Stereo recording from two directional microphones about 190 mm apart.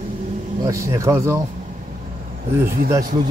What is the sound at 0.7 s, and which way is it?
Speech, 15° right (ahead or behind).